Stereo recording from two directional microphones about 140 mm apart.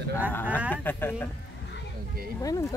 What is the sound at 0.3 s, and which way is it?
Speech, 15° left (ahead or behind).